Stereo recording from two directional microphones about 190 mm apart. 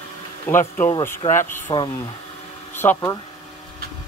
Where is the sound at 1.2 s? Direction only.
30° left (ahead or behind).